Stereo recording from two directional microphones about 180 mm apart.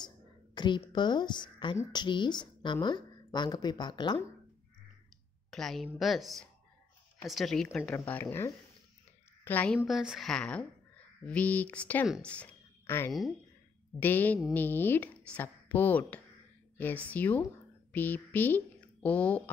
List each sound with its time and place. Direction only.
0.6 s speech: 25° left (ahead or behind)
5.5 s a woman's voice: centre (ahead or behind)
9.8 s speech: 5° right (ahead or behind)